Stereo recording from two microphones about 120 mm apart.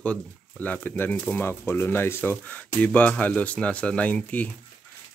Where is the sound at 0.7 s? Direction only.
15° left (ahead or behind).